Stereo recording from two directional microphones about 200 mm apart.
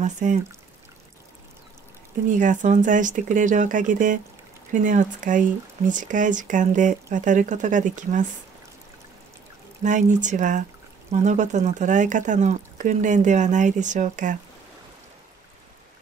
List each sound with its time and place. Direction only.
0.0 s speech: 40° right (ahead or behind)
2.2 s speech: 40° right (ahead or behind)
9.8 s speech: 40° right (ahead or behind)